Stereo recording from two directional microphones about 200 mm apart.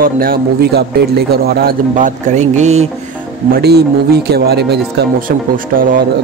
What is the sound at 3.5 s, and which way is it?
A man's voice, 55° right (ahead or behind).